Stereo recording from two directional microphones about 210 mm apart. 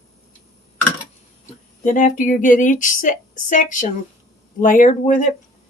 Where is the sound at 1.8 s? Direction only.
35° left (ahead or behind).